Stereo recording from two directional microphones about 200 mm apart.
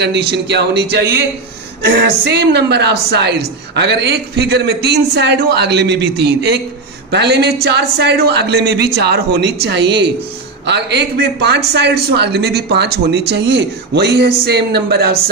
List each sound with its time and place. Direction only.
0.0 s a woman's voice: 55° right (ahead or behind)